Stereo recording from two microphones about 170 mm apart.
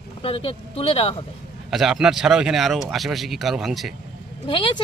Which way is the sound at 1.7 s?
Centre (ahead or behind).